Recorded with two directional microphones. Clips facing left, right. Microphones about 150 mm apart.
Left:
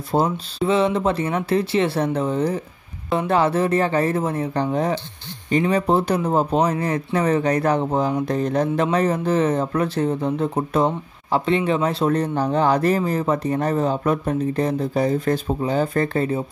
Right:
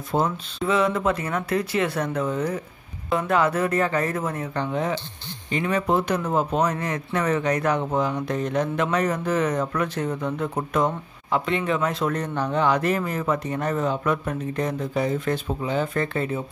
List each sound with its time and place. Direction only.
0.1 s speech: 35° left (ahead or behind)